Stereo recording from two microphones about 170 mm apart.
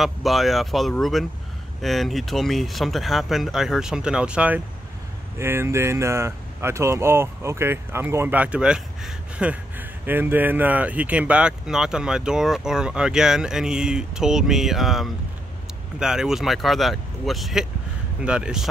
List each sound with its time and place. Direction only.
0.0 s speech: centre (ahead or behind)